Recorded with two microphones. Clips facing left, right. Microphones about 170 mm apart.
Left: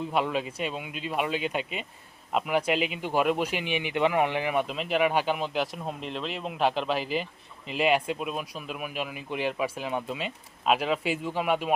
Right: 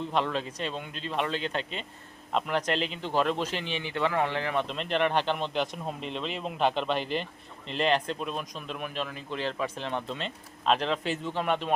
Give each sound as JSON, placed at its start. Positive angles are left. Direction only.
{"t": 0.1, "sound": "a man's voice", "side_deg": 10}